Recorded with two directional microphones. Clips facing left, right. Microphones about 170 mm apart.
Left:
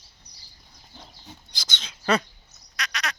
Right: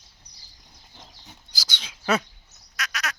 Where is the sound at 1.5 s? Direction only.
5° right (ahead or behind).